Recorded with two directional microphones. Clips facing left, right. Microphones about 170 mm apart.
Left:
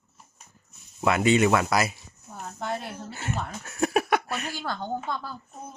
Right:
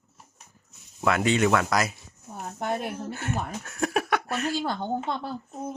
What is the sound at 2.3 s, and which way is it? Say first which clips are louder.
Speech: right 2 dB; 20° right (ahead or behind).